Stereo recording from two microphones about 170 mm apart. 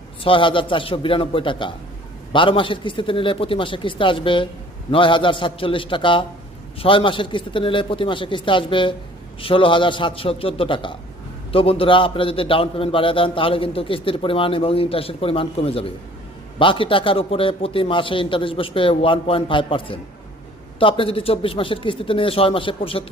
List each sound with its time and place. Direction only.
0.2 s a man's voice: 30° left (ahead or behind)